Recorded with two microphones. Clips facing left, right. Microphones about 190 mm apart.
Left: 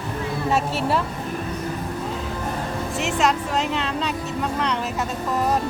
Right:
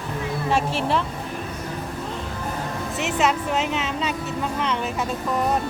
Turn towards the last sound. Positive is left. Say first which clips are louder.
# left 1 dB
turn(degrees=0)  # may be behind; listen again after turning